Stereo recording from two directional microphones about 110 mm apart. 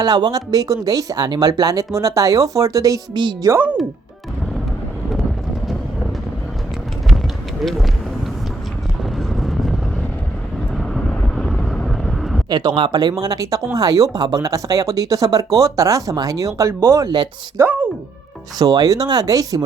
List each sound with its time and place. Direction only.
0.0 s speech: 35° right (ahead or behind)
7.6 s speech: centre (ahead or behind)
9.1 s vehicle: centre (ahead or behind)
10.8 s vehicle: 5° left (ahead or behind)
12.5 s speech: 40° right (ahead or behind)
17.6 s speech: 15° right (ahead or behind)
18.6 s speech: 35° right (ahead or behind)